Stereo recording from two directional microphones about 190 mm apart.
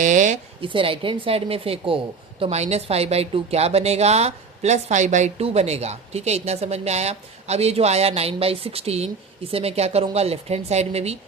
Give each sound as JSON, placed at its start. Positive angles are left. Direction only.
{"t": 0.0, "sound": "a woman's voice", "side_deg": -40}
{"t": 0.6, "sound": "a woman's voice", "side_deg": -25}